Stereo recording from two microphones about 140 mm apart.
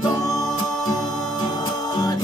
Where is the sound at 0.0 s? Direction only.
25° left (ahead or behind).